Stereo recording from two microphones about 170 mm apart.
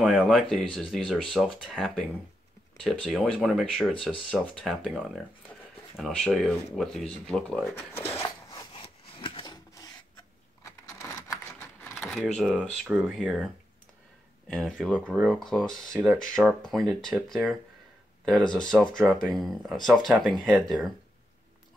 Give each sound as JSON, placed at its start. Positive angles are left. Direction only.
{"t": 0.0, "sound": "speech", "side_deg": -5}
{"t": 8.8, "sound": "wood", "side_deg": 30}
{"t": 10.6, "sound": "a sound", "side_deg": 20}
{"t": 11.9, "sound": "keys jangling", "side_deg": 0}
{"t": 12.4, "sound": "speech", "side_deg": -5}
{"t": 14.5, "sound": "speech", "side_deg": 5}